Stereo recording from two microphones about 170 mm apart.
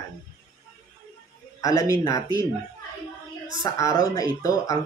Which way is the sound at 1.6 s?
20° left (ahead or behind).